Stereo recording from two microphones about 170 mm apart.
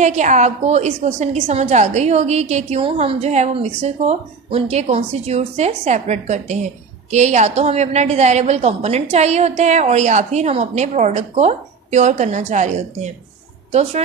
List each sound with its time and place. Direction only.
0.0 s a woman's voice: 45° right (ahead or behind)